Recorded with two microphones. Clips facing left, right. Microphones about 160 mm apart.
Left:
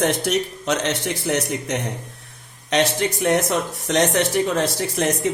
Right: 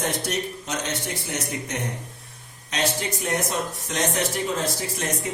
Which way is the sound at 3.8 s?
80° left.